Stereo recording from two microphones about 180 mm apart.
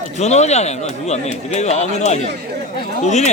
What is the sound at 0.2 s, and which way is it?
Speech, 40° left (ahead or behind).